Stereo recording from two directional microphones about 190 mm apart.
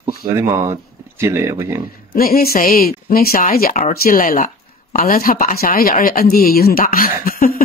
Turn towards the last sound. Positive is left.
turn(degrees=50)  # may be behind; listen again after turning